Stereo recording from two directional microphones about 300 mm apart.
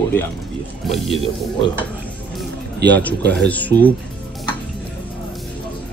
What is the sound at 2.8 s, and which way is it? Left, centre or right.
Speech, right.